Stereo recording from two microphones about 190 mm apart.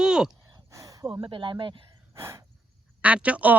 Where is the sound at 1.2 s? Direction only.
25° right (ahead or behind).